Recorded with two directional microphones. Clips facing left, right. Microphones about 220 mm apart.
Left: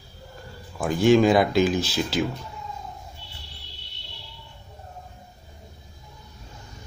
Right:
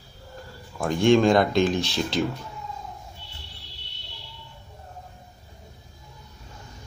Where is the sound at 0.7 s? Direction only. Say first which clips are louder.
Left 1 dB; 5° left (ahead or behind).